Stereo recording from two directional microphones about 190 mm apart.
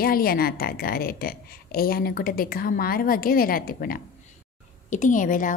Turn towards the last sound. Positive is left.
turn(degrees=45)  # may be behind; listen again after turning